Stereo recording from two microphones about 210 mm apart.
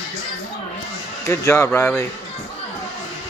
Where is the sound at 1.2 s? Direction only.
15° left (ahead or behind).